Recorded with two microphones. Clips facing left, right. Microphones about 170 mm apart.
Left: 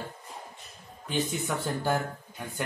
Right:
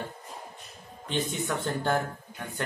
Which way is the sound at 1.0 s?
10° left (ahead or behind).